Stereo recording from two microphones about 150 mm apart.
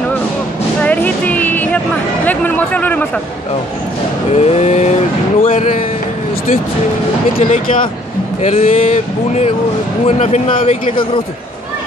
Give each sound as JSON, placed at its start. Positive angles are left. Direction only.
{"t": 0.7, "sound": "music", "side_deg": 10}
{"t": 2.2, "sound": "a sound", "side_deg": 10}
{"t": 4.3, "sound": "speech", "side_deg": 45}
{"t": 8.4, "sound": "speech", "side_deg": 45}